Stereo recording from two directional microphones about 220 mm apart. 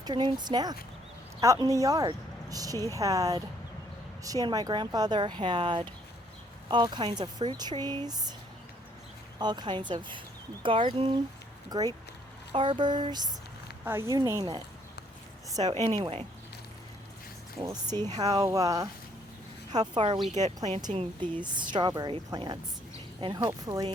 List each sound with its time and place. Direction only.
0.0 s speech: 20° right (ahead or behind)
9.4 s speech: 20° right (ahead or behind)
12.5 s speech: 20° right (ahead or behind)
15.5 s speech: 30° right (ahead or behind)
17.6 s speech: 20° right (ahead or behind)